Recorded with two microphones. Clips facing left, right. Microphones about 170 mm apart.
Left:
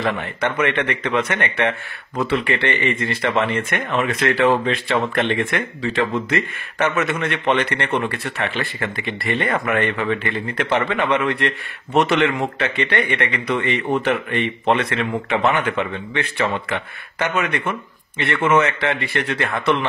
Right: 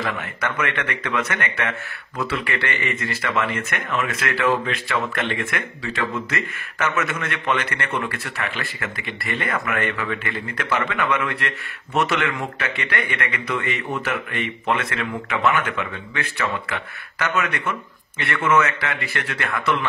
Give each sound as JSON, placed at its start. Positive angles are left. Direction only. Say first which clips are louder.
{"t": 0.0, "sound": "speech", "louder": "left 5 dB", "side_deg": 25}